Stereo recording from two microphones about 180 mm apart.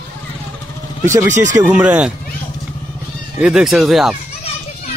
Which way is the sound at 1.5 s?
10° right (ahead or behind).